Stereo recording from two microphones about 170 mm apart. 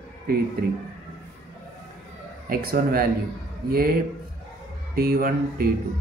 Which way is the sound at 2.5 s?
60° right (ahead or behind).